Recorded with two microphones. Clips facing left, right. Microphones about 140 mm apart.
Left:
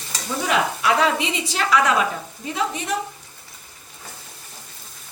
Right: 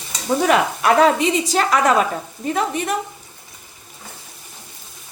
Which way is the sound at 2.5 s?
55° right (ahead or behind).